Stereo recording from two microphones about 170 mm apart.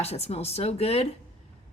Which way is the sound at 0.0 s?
40° left (ahead or behind).